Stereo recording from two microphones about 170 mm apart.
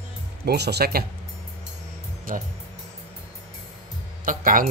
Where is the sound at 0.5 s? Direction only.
75° right (ahead or behind).